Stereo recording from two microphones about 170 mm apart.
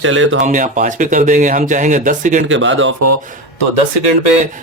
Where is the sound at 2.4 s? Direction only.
90° right.